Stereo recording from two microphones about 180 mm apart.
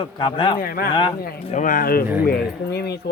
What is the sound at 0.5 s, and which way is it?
Speech, 55° left (ahead or behind).